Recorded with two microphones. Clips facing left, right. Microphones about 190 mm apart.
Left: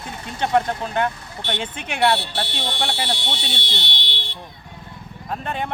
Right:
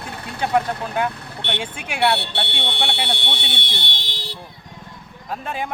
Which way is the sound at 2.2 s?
65° right (ahead or behind).